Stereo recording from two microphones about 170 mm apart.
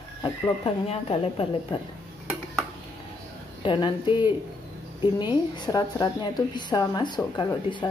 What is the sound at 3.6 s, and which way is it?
A woman's voice, 30° left (ahead or behind).